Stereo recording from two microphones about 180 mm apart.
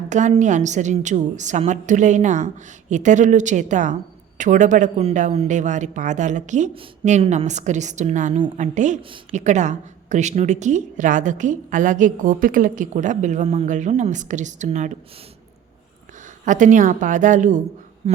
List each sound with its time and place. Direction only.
0.1 s a woman's voice: 40° right (ahead or behind)
9.0 s a woman's voice: 30° right (ahead or behind)
9.3 s a woman's voice: 40° right (ahead or behind)
16.5 s a woman's voice: 45° right (ahead or behind)
18.0 s a sound: 35° right (ahead or behind)